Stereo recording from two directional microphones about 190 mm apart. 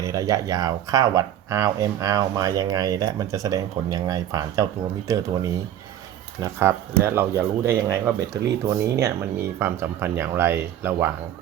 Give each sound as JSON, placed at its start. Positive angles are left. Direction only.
{"t": 0.0, "sound": "speech", "side_deg": -15}